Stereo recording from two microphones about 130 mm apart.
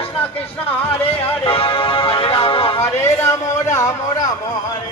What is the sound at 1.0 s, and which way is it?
Music, 45° left (ahead or behind).